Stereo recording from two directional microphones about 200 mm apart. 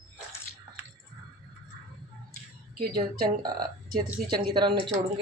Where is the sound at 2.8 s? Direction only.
50° right (ahead or behind).